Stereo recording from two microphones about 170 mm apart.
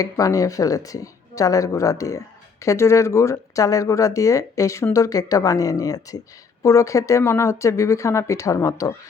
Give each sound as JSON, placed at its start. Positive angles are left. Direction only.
{"t": 0.0, "sound": "speech", "side_deg": 20}